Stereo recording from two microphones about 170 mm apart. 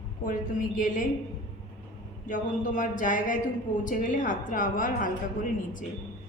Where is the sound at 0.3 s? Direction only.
50° left (ahead or behind).